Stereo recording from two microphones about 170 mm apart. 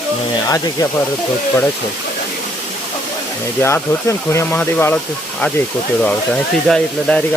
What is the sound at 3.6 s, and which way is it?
Speech, 15° left (ahead or behind).